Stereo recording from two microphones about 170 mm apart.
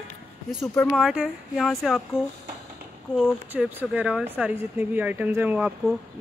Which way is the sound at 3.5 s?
10° right (ahead or behind).